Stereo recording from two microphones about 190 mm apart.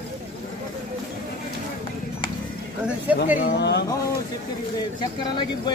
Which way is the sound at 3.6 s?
60° left (ahead or behind).